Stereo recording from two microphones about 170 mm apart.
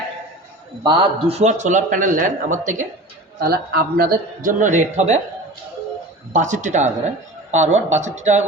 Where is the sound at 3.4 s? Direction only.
60° right (ahead or behind); by 5.2 s 40° right (ahead or behind).